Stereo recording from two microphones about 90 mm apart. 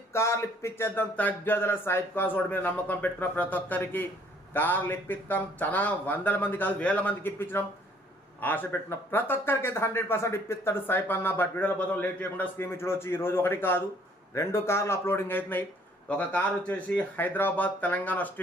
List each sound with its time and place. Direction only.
0.1 s speech: 30° left (ahead or behind)
1.1 s speech: 20° left (ahead or behind)